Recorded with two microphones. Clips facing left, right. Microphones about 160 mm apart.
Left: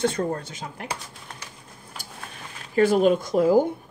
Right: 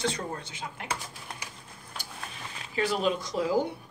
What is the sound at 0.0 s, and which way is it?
Speech, 50° left (ahead or behind).